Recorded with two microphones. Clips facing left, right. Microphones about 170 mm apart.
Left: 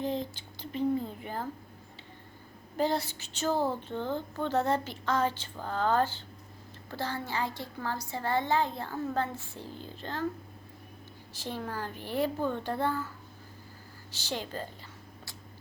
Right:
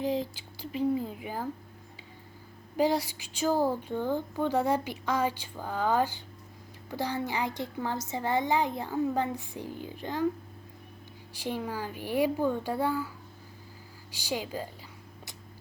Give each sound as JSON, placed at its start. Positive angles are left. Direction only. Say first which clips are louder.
{"t": 0.0, "sound": "speech", "louder": "right 3 dB", "side_deg": -10}
{"t": 2.7, "sound": "speech", "louder": "right 3 dB", "side_deg": -10}
{"t": 11.3, "sound": "speech", "louder": "right 3 dB", "side_deg": -10}
{"t": 14.1, "sound": "speech", "louder": "right 3 dB", "side_deg": -10}